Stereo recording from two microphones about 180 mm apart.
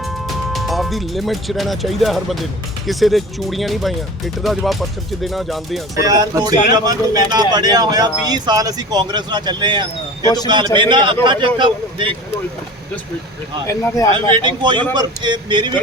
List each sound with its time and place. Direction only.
0.3 s speech: centre (ahead or behind)
6.1 s speech: 20° right (ahead or behind)
10.2 s speech: 20° left (ahead or behind)
10.8 s speech: 25° right (ahead or behind)
13.7 s speech: 20° left (ahead or behind)
14.1 s speech: 25° right (ahead or behind)